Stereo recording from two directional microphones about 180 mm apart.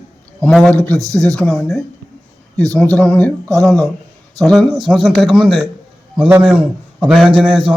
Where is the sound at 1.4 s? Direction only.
Centre (ahead or behind).